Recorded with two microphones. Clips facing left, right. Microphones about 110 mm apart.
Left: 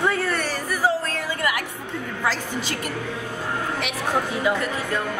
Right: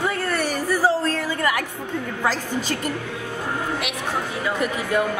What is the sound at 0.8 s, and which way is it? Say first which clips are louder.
Music: even; 35° right (ahead or behind).